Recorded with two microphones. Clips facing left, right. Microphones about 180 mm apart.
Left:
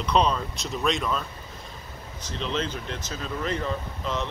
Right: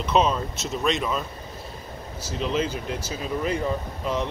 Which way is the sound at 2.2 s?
5° right (ahead or behind).